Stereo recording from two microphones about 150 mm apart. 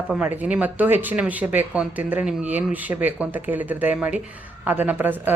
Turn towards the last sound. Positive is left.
turn(degrees=-10)  # may be behind; listen again after turning